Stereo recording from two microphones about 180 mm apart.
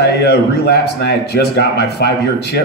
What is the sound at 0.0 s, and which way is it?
A man's voice, 65° left (ahead or behind).